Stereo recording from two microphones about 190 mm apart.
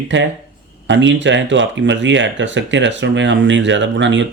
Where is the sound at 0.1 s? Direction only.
75° right (ahead or behind).